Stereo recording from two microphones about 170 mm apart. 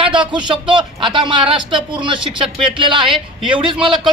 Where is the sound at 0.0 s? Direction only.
30° right (ahead or behind).